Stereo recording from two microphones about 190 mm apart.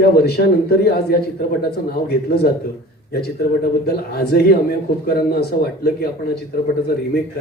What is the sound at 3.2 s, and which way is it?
Speech, 55° left (ahead or behind).